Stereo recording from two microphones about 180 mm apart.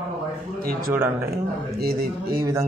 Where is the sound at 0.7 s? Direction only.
55° right (ahead or behind).